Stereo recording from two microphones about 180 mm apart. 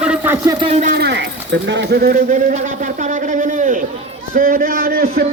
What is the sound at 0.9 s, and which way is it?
Speech, 65° right (ahead or behind).